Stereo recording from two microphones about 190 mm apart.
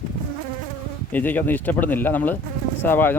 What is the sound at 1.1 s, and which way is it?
Speech, 10° left (ahead or behind).